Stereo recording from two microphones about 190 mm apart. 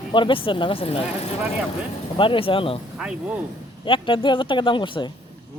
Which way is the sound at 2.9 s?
5° right (ahead or behind).